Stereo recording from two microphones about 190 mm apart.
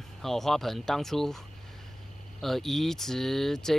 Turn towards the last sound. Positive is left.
turn(degrees=0)  # may be behind; listen again after turning